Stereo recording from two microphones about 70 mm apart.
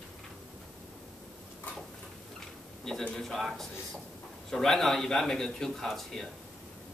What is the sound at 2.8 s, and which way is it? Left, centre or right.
A man's voice, centre.